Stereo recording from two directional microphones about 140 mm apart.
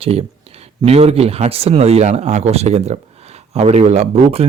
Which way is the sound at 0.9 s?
45° right (ahead or behind).